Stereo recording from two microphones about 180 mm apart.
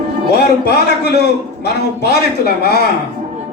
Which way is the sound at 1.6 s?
65° left (ahead or behind).